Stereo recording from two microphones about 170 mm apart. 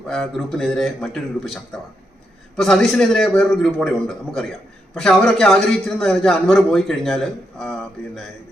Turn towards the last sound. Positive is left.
turn(degrees=0)  # may be behind; listen again after turning